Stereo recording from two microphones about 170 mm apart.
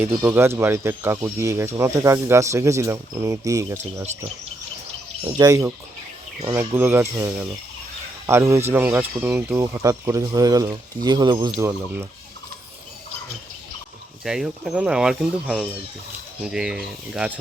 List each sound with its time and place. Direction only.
0.3 s speech: 15° right (ahead or behind)
5.2 s speech: 20° right (ahead or behind)
8.3 s speech: 15° right (ahead or behind)
14.3 s speech: 5° right (ahead or behind)